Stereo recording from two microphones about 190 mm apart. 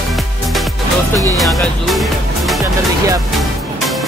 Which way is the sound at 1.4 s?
Centre (ahead or behind).